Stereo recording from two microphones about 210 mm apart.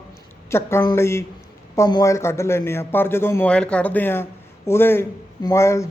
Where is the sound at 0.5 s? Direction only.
10° left (ahead or behind).